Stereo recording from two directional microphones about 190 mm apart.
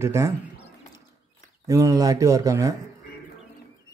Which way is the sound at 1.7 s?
15° right (ahead or behind).